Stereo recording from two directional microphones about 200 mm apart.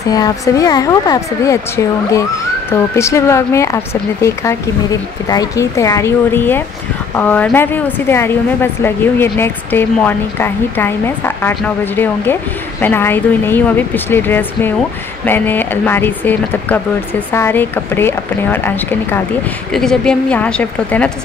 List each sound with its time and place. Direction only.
0.1 s a woman's voice: 20° left (ahead or behind)